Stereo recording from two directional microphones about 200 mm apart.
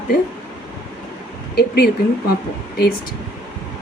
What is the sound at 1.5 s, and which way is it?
Speech, 50° left (ahead or behind).